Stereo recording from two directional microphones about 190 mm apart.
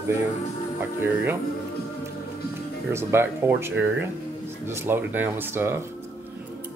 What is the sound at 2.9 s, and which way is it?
Speech, 15° right (ahead or behind).